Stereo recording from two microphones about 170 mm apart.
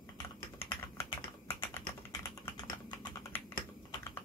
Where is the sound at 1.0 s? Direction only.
15° left (ahead or behind).